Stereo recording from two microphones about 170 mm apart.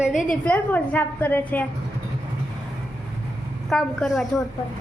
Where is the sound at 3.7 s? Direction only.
Centre (ahead or behind).